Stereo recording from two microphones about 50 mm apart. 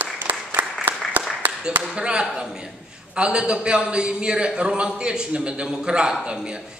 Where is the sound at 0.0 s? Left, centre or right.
Right.